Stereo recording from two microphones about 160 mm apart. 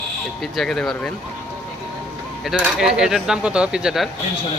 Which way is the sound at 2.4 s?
5° right (ahead or behind).